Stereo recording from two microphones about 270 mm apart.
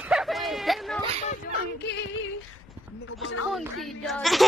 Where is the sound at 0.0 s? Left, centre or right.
Centre.